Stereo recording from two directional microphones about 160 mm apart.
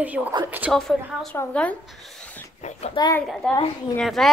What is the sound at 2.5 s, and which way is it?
Speech, 45° left (ahead or behind).